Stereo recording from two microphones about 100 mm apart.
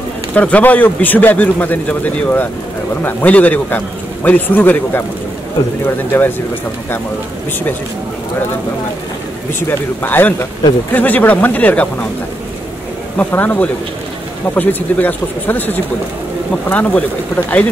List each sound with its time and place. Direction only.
0.3 s a man's voice: 15° left (ahead or behind)
6.1 s a man's voice: 20° left (ahead or behind)
9.7 s a man's voice: 20° left (ahead or behind)
13.2 s a man's voice: 20° left (ahead or behind)